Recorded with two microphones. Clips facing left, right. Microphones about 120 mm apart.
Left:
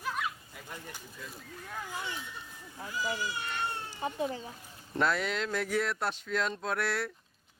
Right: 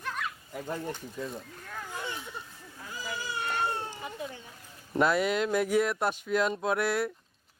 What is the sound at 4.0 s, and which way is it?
Speech, 30° left (ahead or behind).